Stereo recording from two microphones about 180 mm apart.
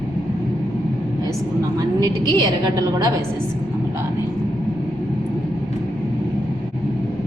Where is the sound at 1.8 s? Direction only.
20° right (ahead or behind).